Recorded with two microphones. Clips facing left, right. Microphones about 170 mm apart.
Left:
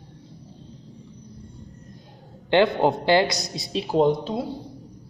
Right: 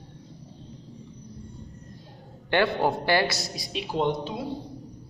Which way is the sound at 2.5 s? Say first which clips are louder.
Left 5 dB; 20° left (ahead or behind).